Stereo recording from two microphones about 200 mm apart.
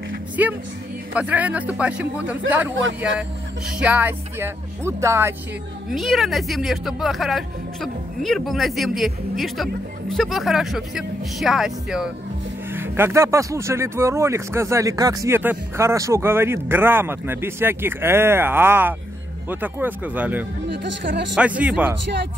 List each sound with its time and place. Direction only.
0.4 s speech: 10° right (ahead or behind)
3.8 s speech: 10° right (ahead or behind)
5.9 s speech: centre (ahead or behind)
20.6 s speech: 60° right (ahead or behind)
21.4 s speech: 5° right (ahead or behind)